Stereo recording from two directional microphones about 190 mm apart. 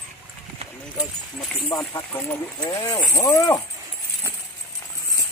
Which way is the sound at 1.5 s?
5° left (ahead or behind).